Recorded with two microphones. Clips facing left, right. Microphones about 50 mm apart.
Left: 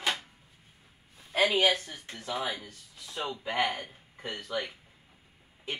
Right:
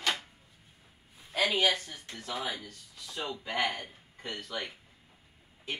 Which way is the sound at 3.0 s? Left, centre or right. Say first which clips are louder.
Left 2 dB; left.